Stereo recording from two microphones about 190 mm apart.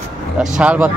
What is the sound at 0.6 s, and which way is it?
Speech, 5° right (ahead or behind).